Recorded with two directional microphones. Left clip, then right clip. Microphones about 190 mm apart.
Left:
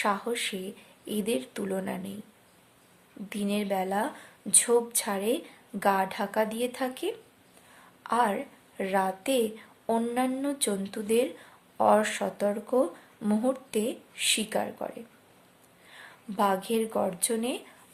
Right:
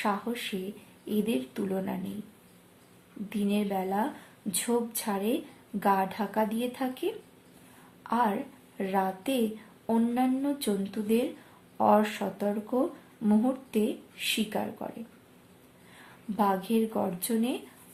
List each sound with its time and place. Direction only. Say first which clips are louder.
0.0 s speech: left 3 dB; 35° left (ahead or behind)
3.2 s a woman's voice: left 1 dB; 35° left (ahead or behind)
16.4 s speech: left 1 dB; 35° left (ahead or behind)